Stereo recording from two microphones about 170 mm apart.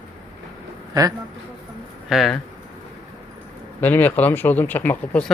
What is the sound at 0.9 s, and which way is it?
Speech, 20° right (ahead or behind).